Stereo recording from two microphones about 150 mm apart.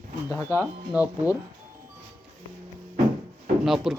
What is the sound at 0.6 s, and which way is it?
Speech, 10° right (ahead or behind).